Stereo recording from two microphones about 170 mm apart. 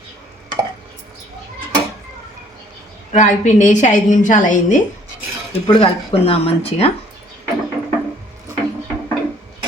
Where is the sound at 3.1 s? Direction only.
45° left (ahead or behind).